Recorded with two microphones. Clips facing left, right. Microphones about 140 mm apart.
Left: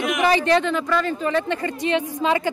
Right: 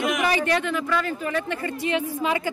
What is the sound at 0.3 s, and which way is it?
A woman's voice, 25° left (ahead or behind).